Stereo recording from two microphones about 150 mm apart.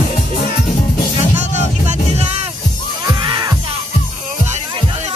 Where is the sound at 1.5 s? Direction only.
50° right (ahead or behind).